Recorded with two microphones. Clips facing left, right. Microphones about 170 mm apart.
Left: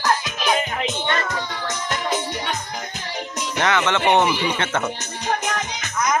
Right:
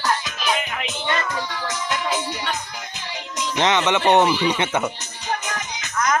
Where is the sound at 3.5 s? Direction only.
20° right (ahead or behind).